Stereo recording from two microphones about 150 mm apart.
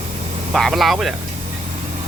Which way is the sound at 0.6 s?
Centre (ahead or behind).